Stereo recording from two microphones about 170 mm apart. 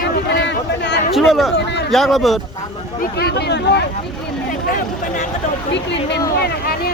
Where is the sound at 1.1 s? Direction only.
Centre (ahead or behind).